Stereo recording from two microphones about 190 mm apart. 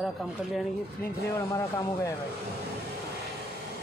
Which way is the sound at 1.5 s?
15° left (ahead or behind).